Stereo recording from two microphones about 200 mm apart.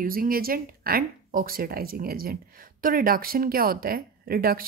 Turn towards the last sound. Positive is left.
turn(degrees=-50)  # may be behind; listen again after turning